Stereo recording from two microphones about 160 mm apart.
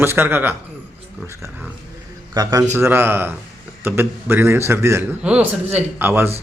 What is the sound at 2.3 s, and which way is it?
A man's voice, 20° right (ahead or behind).